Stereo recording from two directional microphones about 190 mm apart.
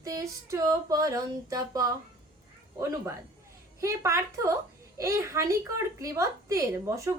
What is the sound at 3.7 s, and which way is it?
Female singing, 15° right (ahead or behind).